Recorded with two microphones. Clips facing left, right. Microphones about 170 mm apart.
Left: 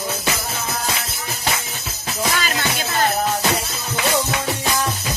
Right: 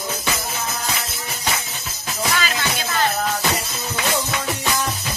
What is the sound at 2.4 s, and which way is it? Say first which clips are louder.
Music: left 1 dB; 45° left (ahead or behind).